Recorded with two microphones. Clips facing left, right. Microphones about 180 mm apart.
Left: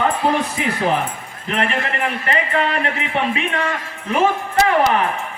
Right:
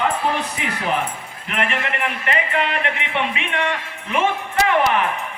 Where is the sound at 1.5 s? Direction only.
35° left (ahead or behind).